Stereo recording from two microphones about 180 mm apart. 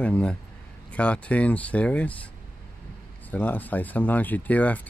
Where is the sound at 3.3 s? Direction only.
10° left (ahead or behind).